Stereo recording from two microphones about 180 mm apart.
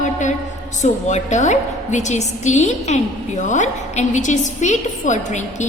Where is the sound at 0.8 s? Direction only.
40° left (ahead or behind).